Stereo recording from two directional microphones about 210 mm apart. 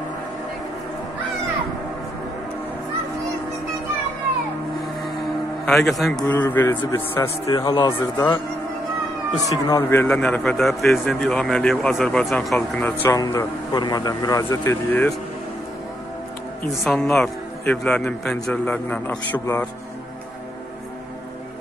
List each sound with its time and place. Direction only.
5.7 s a man's voice: 5° left (ahead or behind)
9.5 s a man's voice: 15° left (ahead or behind)
16.8 s speech: centre (ahead or behind)